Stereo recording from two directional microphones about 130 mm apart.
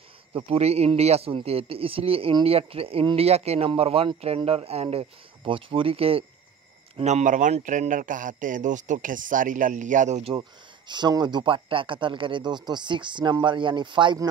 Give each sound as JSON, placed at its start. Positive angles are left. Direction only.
{"t": 0.3, "sound": "a man's voice", "side_deg": -45}
{"t": 7.0, "sound": "a man's voice", "side_deg": -60}
{"t": 10.9, "sound": "speech", "side_deg": -35}